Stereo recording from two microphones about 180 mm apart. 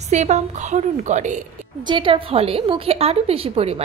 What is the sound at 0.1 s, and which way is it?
A woman's voice, 40° right (ahead or behind).